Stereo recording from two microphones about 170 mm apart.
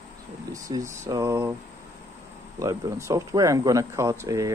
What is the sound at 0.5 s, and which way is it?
Speech, 20° right (ahead or behind).